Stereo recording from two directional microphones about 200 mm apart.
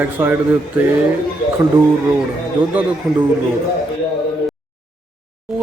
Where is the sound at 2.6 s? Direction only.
25° right (ahead or behind).